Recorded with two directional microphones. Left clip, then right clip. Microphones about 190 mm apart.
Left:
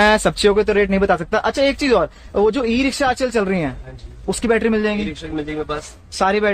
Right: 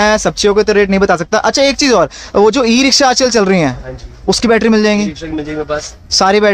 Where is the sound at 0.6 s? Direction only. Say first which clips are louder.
Right 6 dB; 20° right (ahead or behind).